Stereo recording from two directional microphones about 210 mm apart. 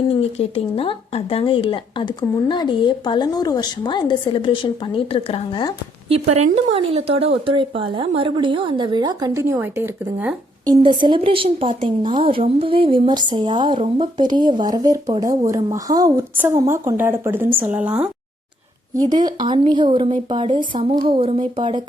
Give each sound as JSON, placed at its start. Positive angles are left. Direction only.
{"t": 0.1, "sound": "a woman's voice", "side_deg": 30}
{"t": 6.1, "sound": "speech", "side_deg": -30}
{"t": 10.7, "sound": "speech", "side_deg": -20}
{"t": 19.1, "sound": "speech", "side_deg": -20}